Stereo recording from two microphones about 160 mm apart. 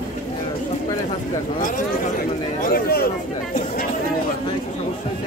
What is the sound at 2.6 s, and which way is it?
Speech, 70° left (ahead or behind).